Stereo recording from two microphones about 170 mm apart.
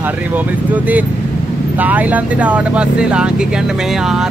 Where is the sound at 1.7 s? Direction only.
10° right (ahead or behind).